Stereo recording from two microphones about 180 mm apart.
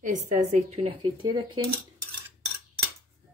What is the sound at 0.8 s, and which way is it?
Speech, 25° right (ahead or behind).